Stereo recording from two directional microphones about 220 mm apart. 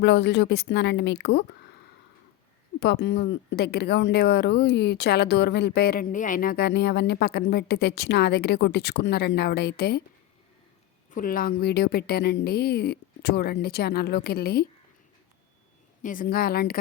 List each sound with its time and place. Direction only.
0.0 s speech: 50° left (ahead or behind)
2.8 s speech: 50° left (ahead or behind)
11.1 s speech: 40° left (ahead or behind)
16.0 s speech: 35° left (ahead or behind)